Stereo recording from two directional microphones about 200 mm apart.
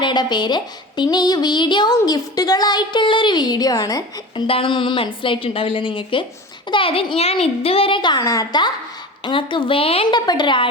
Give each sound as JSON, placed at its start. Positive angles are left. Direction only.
{"t": 0.0, "sound": "speech", "side_deg": 20}
{"t": 1.1, "sound": "music", "side_deg": 20}